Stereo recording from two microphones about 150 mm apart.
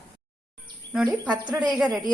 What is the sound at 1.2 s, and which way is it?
Speech, 10° right (ahead or behind).